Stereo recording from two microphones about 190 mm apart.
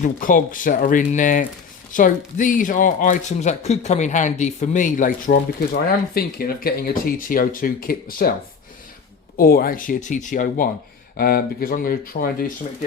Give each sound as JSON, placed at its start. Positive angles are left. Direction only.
{"t": 0.0, "sound": "speech", "side_deg": 45}
{"t": 9.4, "sound": "speech", "side_deg": 50}